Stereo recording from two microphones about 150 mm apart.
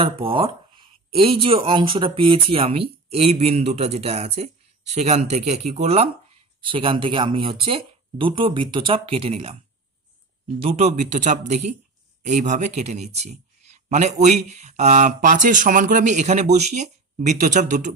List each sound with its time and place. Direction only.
0.0 s speech: 35° right (ahead or behind)
6.6 s speech: 35° right (ahead or behind)
10.6 s speech: 45° right (ahead or behind)